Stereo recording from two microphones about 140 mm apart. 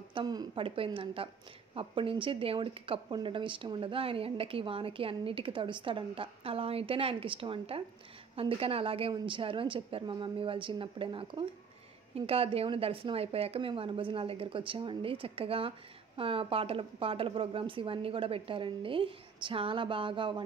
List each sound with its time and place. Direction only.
0.1 s a woman's voice: 30° right (ahead or behind)